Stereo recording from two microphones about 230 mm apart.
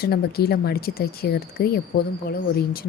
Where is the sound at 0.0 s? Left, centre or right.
Left.